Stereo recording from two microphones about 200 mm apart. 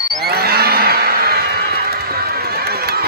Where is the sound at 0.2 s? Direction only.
50° right (ahead or behind).